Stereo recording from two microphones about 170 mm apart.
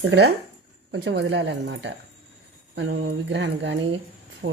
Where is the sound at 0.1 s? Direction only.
90° right.